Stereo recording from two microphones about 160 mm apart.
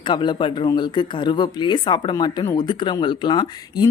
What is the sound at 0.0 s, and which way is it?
Speech, 30° left (ahead or behind).